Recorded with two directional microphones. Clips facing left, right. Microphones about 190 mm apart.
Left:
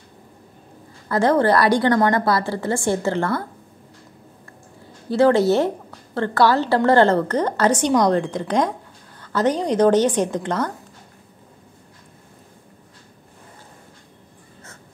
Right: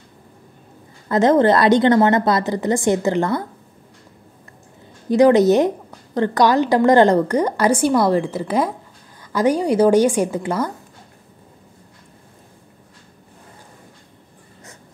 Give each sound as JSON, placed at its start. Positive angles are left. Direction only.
{"t": 1.0, "sound": "a woman's voice", "side_deg": -20}
{"t": 5.1, "sound": "a woman's voice", "side_deg": -15}